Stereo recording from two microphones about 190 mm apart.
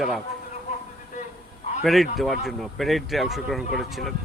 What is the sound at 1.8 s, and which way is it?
A man's voice, centre (ahead or behind).